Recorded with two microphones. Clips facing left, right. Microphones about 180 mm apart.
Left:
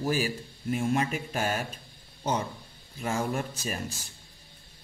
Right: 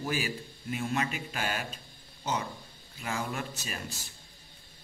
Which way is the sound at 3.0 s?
45° left (ahead or behind).